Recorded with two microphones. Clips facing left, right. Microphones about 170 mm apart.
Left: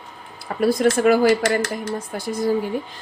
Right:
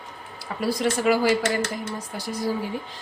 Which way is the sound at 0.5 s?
50° left (ahead or behind).